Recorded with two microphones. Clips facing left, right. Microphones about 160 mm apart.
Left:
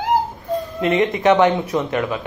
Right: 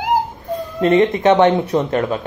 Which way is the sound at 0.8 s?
30° right (ahead or behind).